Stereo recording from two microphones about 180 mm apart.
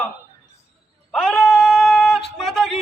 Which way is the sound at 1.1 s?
5° left (ahead or behind).